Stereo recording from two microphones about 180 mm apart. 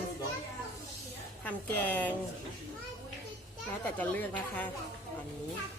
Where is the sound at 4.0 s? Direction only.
10° left (ahead or behind).